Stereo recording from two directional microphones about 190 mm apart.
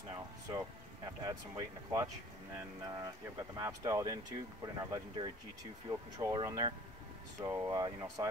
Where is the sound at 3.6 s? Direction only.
15° right (ahead or behind).